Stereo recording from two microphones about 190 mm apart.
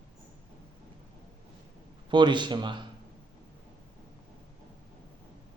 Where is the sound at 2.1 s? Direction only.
25° right (ahead or behind).